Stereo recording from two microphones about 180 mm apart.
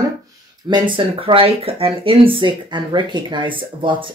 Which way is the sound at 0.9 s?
30° right (ahead or behind).